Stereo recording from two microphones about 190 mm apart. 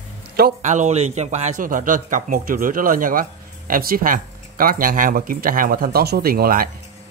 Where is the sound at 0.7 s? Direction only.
35° right (ahead or behind).